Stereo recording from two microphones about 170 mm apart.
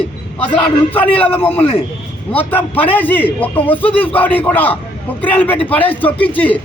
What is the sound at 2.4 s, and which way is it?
A man's voice, 10° left (ahead or behind).